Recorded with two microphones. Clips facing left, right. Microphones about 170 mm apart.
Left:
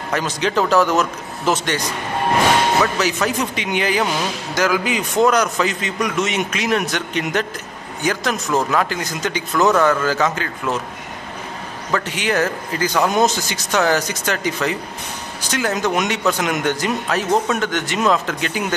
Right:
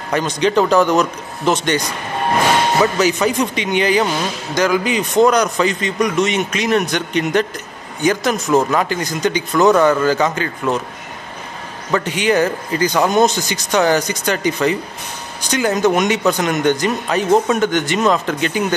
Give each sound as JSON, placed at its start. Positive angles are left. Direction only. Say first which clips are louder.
{"t": 0.1, "sound": "a man's voice", "louder": "right 5 dB", "side_deg": 0}
{"t": 2.8, "sound": "a man's voice", "louder": "right 4 dB", "side_deg": 0}
{"t": 11.9, "sound": "a man's voice", "louder": "right 4 dB", "side_deg": 0}